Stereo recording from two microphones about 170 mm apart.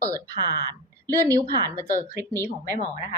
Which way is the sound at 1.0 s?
20° right (ahead or behind).